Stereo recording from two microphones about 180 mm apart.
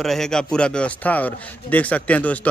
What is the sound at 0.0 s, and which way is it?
Speech, centre (ahead or behind).